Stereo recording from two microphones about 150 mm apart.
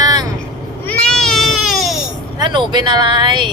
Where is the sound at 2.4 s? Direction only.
30° right (ahead or behind).